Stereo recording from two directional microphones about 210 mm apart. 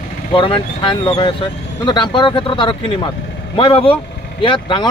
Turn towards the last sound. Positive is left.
turn(degrees=25)  # may be behind; listen again after turning